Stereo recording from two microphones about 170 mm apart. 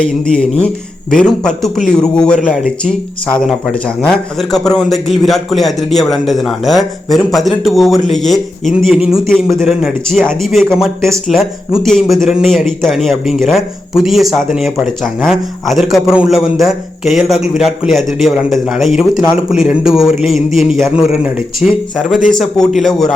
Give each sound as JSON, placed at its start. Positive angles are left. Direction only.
{"t": 0.0, "sound": "a man's voice", "side_deg": 5}